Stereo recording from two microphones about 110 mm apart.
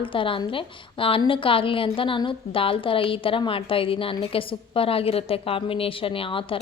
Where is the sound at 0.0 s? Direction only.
50° left (ahead or behind).